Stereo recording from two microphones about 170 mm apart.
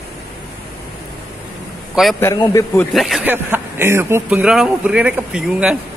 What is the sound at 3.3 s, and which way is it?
Speech, 15° right (ahead or behind).